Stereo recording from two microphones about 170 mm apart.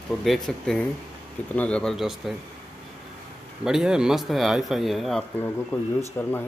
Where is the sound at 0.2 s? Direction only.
Centre (ahead or behind).